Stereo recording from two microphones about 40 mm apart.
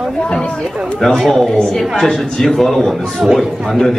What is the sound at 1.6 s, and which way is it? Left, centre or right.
A man's voice, centre.